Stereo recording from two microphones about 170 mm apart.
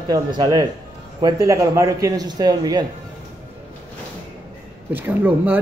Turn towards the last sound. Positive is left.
turn(degrees=-10)  # may be behind; listen again after turning